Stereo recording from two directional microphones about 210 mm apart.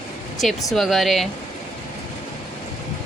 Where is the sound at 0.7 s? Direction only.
Centre (ahead or behind).